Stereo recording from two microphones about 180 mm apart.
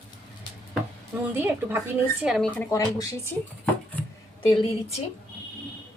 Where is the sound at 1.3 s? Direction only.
10° right (ahead or behind).